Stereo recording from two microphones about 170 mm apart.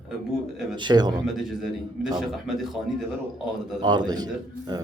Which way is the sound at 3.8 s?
25° right (ahead or behind).